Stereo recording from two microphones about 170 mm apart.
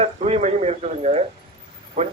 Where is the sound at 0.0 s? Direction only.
40° right (ahead or behind).